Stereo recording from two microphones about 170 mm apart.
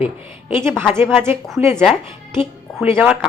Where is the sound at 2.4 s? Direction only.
10° right (ahead or behind).